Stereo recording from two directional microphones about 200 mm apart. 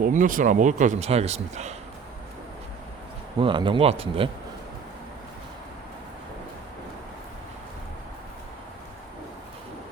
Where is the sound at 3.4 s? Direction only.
25° right (ahead or behind).